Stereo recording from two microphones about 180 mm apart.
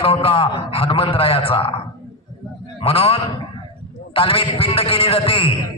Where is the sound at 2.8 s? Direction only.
30° left (ahead or behind).